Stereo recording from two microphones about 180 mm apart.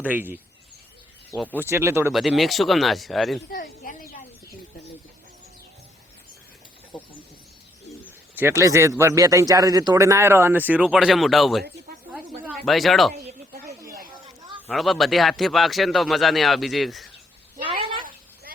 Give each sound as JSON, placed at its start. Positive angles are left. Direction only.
{"t": 0.0, "sound": "speech", "side_deg": -10}
{"t": 1.5, "sound": "speech", "side_deg": -15}
{"t": 2.1, "sound": "speech", "side_deg": 0}
{"t": 3.5, "sound": "a sound", "side_deg": 50}
{"t": 8.4, "sound": "speech", "side_deg": -15}
{"t": 12.1, "sound": "a sound", "side_deg": 0}
{"t": 14.7, "sound": "speech", "side_deg": 0}